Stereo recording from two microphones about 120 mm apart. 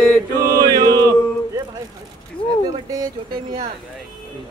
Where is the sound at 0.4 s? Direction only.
30° right (ahead or behind).